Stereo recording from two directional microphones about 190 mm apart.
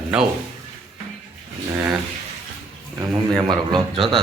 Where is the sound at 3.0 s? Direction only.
15° right (ahead or behind).